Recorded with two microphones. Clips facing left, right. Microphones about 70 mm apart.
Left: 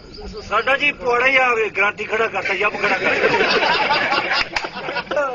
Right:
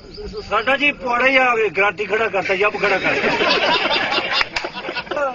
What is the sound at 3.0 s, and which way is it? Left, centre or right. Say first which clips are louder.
Speech: left 1 dB; left.